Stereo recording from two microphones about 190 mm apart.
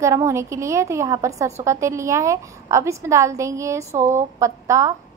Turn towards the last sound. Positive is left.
turn(degrees=-15)  # may be behind; listen again after turning